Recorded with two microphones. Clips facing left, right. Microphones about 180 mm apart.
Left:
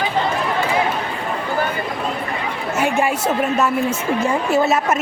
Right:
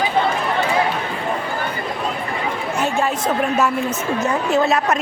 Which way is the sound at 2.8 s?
10° left (ahead or behind).